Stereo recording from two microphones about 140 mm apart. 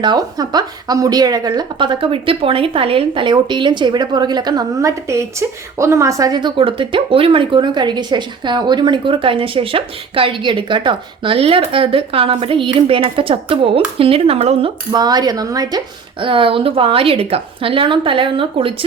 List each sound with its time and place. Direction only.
0.0 s a woman's voice: 30° right (ahead or behind); by 14.7 s 45° right (ahead or behind)
14.9 s a woman's voice: 30° right (ahead or behind)
16.2 s a woman's voice: 40° right (ahead or behind)